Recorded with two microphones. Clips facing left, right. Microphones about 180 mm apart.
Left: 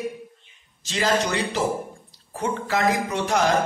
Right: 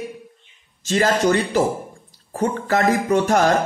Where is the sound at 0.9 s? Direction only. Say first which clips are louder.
Right 6 dB; 50° right (ahead or behind).